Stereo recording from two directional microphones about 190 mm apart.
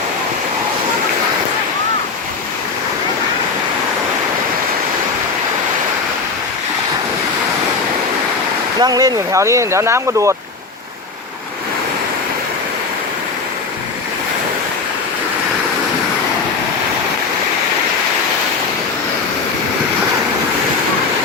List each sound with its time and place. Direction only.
8.8 s speech: 20° right (ahead or behind)